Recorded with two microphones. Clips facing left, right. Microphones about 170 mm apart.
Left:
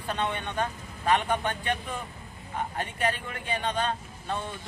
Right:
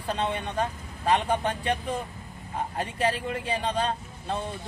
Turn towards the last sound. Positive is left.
turn(degrees=-30)  # may be behind; listen again after turning